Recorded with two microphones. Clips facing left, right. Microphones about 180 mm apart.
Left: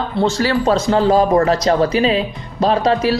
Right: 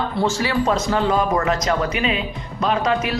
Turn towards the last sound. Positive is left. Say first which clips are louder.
# left 5 dB
turn(degrees=35)  # may be behind; listen again after turning